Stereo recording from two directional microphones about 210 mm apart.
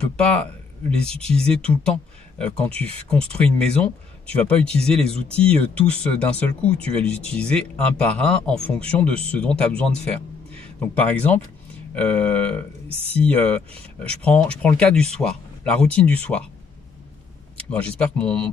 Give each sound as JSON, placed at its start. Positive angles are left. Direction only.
{"t": 0.3, "sound": "speech", "side_deg": 5}
{"t": 12.8, "sound": "speech", "side_deg": -25}
{"t": 13.1, "sound": "speech", "side_deg": 5}
{"t": 17.6, "sound": "speech", "side_deg": 5}